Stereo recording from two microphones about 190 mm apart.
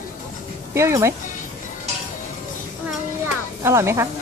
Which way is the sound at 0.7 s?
15° right (ahead or behind).